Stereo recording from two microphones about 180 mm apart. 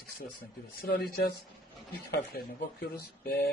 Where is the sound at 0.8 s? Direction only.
55° left (ahead or behind).